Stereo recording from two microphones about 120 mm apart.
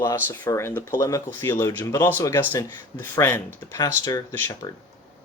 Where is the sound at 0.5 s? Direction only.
20° left (ahead or behind).